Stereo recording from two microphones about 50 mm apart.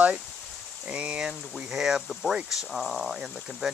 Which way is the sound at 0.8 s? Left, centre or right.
Right.